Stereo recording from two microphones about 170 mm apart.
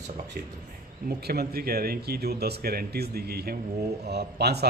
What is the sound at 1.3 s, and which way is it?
A man's voice, 65° right (ahead or behind).